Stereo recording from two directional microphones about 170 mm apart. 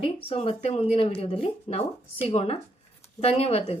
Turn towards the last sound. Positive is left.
turn(degrees=35)  # may be behind; listen again after turning